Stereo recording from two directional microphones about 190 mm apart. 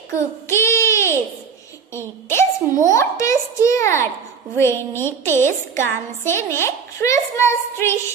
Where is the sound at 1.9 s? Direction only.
15° left (ahead or behind).